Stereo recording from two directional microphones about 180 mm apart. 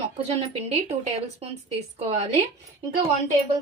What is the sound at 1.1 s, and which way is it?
Speech, 35° right (ahead or behind).